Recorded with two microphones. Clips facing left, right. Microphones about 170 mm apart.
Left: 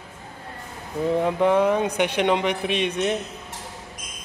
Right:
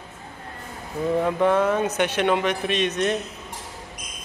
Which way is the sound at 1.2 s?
15° left (ahead or behind).